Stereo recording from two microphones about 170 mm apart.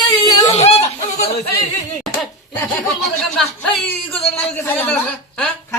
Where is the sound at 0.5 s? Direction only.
40° left (ahead or behind).